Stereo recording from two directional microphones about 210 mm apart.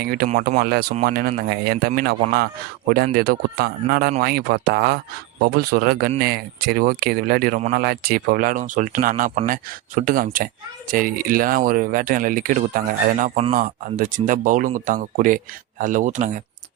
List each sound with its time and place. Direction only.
0.0 s speech: 50° right (ahead or behind)